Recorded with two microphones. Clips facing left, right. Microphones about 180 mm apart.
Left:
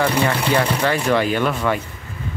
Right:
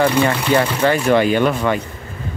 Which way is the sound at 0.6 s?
Centre (ahead or behind).